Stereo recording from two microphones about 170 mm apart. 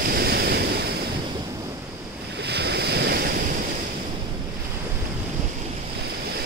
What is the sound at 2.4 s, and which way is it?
Waves, 75° right (ahead or behind).